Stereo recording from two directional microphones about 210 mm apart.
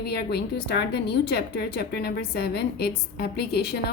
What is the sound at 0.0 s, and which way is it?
A woman's voice, 50° left (ahead or behind).